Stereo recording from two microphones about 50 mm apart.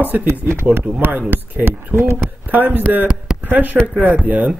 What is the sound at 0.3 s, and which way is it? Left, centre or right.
Speech, right.